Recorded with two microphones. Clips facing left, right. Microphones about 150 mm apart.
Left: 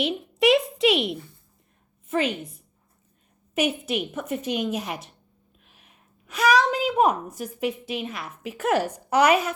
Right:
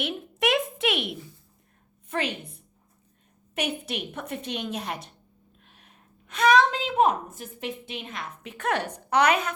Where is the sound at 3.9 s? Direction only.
5° left (ahead or behind).